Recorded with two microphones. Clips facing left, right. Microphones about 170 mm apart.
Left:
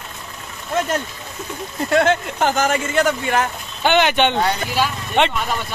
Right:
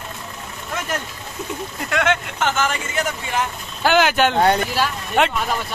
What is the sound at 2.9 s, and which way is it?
Speech, 70° left (ahead or behind).